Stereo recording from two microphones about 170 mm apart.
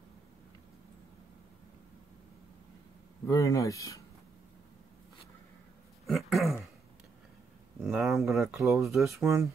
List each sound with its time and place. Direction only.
3.3 s speech: 20° left (ahead or behind)
6.0 s a sound: centre (ahead or behind)
7.8 s speech: centre (ahead or behind)